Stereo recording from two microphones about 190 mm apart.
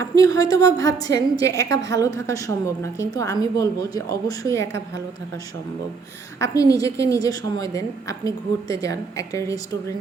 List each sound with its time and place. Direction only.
0.0 s a woman's voice: 20° left (ahead or behind)
6.4 s a woman's voice: 15° left (ahead or behind)